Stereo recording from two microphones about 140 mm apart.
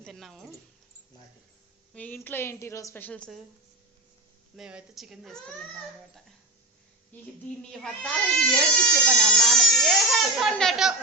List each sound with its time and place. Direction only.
0.0 s speech: centre (ahead or behind)
1.9 s a woman's voice: 10° left (ahead or behind)
4.5 s speech: 5° right (ahead or behind)
7.7 s speech: 5° left (ahead or behind)